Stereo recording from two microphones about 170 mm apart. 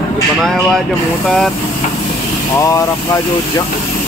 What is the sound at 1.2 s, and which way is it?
Speech, centre (ahead or behind).